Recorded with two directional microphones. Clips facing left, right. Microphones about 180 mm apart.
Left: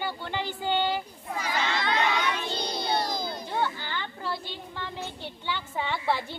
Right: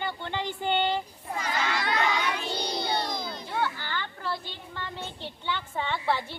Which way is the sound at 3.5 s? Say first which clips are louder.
Even; 15° left (ahead or behind).